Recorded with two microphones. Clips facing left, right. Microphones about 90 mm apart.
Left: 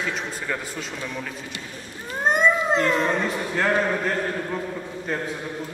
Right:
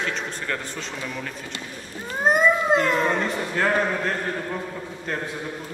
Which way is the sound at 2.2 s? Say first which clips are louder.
Right 1 dB; 5° right (ahead or behind).